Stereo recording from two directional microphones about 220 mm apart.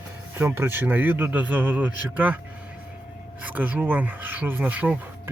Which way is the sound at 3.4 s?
5° right (ahead or behind).